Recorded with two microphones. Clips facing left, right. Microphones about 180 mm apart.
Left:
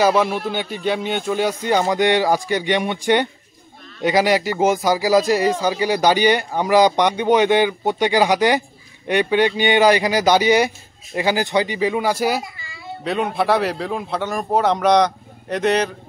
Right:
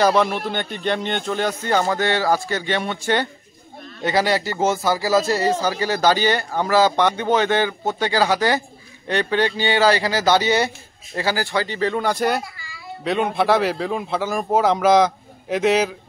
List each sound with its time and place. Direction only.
0.0 s a man's voice: 10° left (ahead or behind)
12.5 s babbling: 25° left (ahead or behind)
13.0 s a man's voice: centre (ahead or behind)